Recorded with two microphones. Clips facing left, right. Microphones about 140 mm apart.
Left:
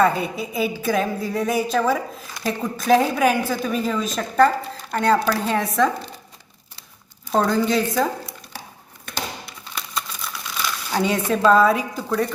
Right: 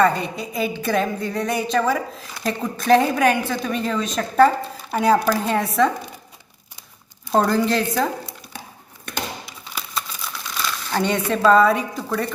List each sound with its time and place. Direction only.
0.0 s a woman's voice: 5° left (ahead or behind)
7.3 s a woman's voice: 5° right (ahead or behind)
9.5 s crumpling: centre (ahead or behind)